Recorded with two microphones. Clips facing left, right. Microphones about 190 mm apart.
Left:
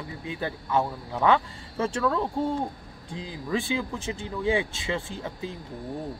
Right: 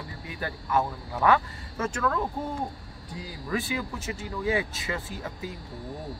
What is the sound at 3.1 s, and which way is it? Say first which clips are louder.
A man's voice: left 2 dB; 25° left (ahead or behind).